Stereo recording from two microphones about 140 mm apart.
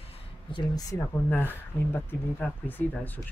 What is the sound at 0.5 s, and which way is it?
Speech, 30° left (ahead or behind).